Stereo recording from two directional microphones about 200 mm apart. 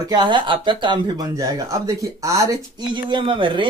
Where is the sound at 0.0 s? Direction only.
20° right (ahead or behind).